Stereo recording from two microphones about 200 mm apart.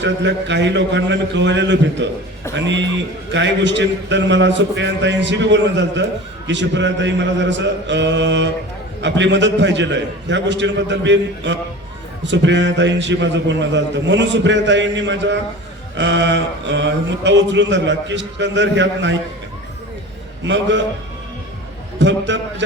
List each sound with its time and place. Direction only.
0.0 s a man's voice: 60° right (ahead or behind)
20.4 s a man's voice: 65° right (ahead or behind)
21.9 s a man's voice: 65° right (ahead or behind)